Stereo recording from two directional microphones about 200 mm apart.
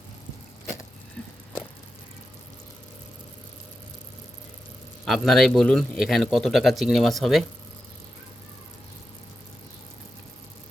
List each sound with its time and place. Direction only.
5.0 s a man's voice: centre (ahead or behind)